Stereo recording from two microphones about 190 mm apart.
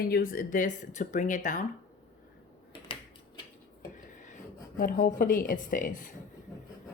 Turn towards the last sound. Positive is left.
turn(degrees=45)  # may be behind; listen again after turning